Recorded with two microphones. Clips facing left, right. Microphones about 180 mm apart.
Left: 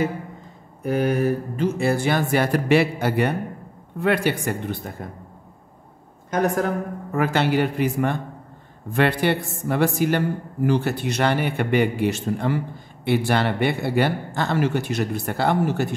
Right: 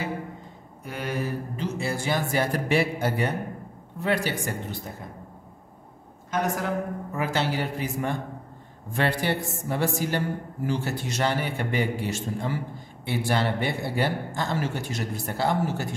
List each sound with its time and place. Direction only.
0.8 s a man's voice: 50° left (ahead or behind)
6.3 s a man's voice: 50° left (ahead or behind)